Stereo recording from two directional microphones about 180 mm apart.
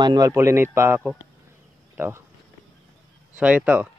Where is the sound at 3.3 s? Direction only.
5° right (ahead or behind).